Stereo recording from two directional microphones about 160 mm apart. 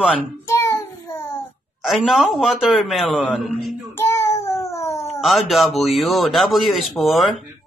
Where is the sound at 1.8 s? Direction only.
Centre (ahead or behind).